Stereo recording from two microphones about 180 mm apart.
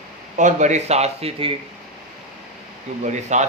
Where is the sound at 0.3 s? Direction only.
40° right (ahead or behind).